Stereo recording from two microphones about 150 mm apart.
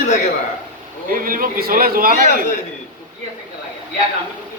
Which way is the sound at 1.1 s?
70° right (ahead or behind).